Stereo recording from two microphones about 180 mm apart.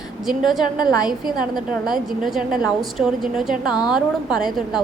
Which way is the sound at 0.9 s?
20° left (ahead or behind).